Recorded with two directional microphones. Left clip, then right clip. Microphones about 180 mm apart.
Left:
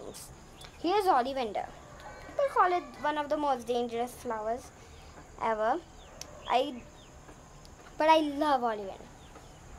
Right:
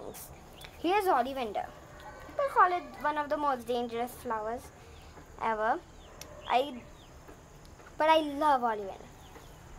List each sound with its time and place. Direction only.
0.1 s dog: 5° left (ahead or behind)
0.9 s a woman's voice: 20° left (ahead or behind)
5.4 s a sound: 15° left (ahead or behind)
8.0 s speech: 15° left (ahead or behind)